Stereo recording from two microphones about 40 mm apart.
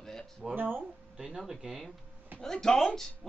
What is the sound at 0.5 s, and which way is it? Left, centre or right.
Speech, right.